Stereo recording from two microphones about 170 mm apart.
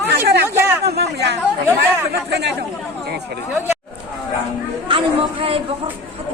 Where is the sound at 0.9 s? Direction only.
75° right (ahead or behind).